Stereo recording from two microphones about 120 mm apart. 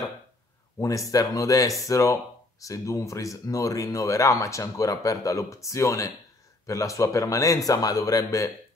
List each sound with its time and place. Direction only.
0.7 s speech: 25° left (ahead or behind)